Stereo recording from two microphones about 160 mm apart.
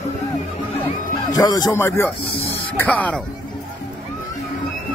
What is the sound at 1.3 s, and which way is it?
A man's voice, 25° left (ahead or behind).